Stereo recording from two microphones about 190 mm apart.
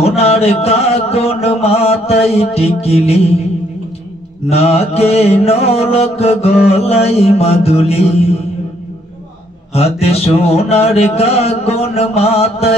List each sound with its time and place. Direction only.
0.0 s mantra: 35° left (ahead or behind)
4.5 s mantra: 30° left (ahead or behind)
9.8 s mantra: 35° left (ahead or behind)